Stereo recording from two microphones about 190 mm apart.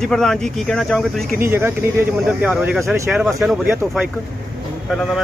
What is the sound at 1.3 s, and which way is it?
Speech, 10° right (ahead or behind).